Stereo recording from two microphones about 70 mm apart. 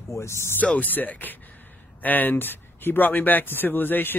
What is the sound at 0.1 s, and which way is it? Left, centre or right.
Speech, left.